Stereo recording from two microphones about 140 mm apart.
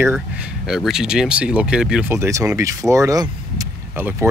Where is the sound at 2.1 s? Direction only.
20° right (ahead or behind).